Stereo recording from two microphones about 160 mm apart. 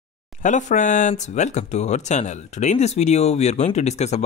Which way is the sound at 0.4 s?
50° left (ahead or behind).